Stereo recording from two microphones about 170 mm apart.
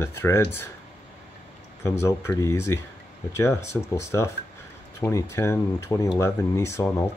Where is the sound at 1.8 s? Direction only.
15° left (ahead or behind).